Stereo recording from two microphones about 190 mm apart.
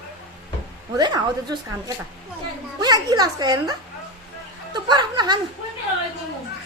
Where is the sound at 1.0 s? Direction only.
20° right (ahead or behind).